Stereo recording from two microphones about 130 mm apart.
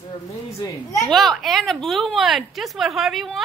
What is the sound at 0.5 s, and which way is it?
Speech, 25° left (ahead or behind).